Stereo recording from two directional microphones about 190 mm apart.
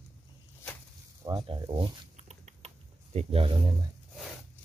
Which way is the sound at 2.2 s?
35° right (ahead or behind).